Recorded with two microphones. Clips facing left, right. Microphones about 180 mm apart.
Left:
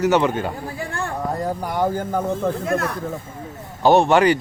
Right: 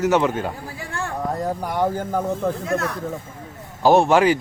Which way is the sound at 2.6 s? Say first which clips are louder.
Left 1 dB; 55° left (ahead or behind).